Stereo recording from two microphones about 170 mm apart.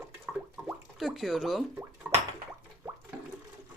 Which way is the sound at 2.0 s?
10° right (ahead or behind).